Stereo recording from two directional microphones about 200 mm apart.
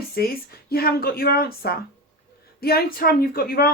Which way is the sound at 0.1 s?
50° left (ahead or behind).